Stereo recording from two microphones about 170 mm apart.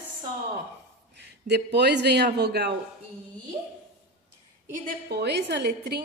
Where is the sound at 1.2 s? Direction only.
80° right.